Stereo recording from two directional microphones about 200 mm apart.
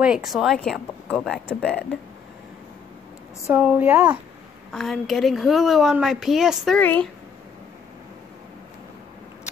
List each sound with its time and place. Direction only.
0.0 s speech: centre (ahead or behind)
3.4 s a woman's voice: 10° right (ahead or behind)
6.8 s speech: 10° left (ahead or behind)